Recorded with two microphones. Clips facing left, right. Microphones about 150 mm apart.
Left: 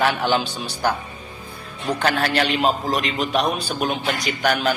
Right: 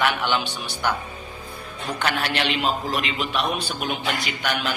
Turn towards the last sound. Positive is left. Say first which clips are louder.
# left 6 dB
turn(degrees=40)  # may be behind; listen again after turning